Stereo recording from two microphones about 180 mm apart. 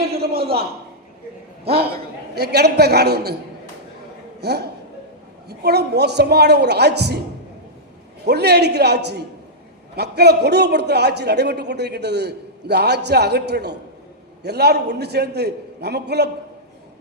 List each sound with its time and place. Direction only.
0.2 s a sound: 60° right (ahead or behind)
2.3 s a man's voice: 65° right (ahead or behind)
4.4 s a man's voice: 65° right (ahead or behind)
8.2 s a man's voice: 65° right (ahead or behind)